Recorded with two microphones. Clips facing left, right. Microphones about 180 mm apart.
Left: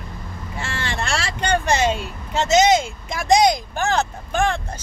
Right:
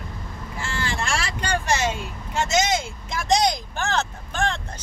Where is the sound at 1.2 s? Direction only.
20° left (ahead or behind).